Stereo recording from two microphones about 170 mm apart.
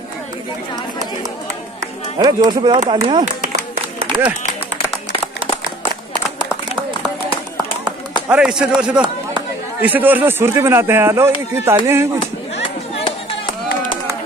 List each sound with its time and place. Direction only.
2.1 s speech: 25° right (ahead or behind)
3.3 s clapping: 40° right (ahead or behind)
8.3 s a man's voice: 5° right (ahead or behind)